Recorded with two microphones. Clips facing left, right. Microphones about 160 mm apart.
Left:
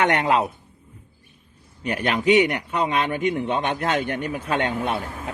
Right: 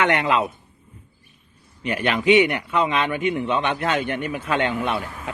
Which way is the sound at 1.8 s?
40° left (ahead or behind).